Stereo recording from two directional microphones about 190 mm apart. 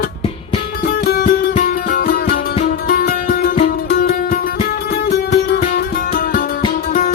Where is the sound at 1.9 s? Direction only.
50° left (ahead or behind).